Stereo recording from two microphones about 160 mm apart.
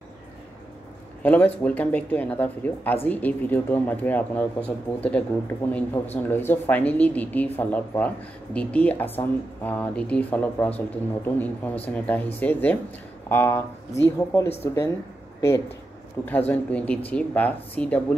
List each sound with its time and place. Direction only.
1.2 s speech: 10° left (ahead or behind)
16.3 s speech: 10° left (ahead or behind)